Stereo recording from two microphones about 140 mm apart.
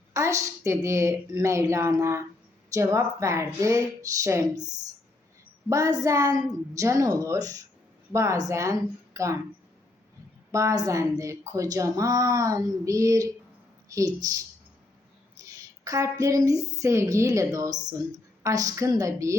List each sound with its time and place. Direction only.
0.1 s a woman's voice: 20° right (ahead or behind)
5.6 s a woman's voice: 25° right (ahead or behind)
10.5 s a woman's voice: 20° right (ahead or behind)
15.5 s a woman's voice: 25° right (ahead or behind)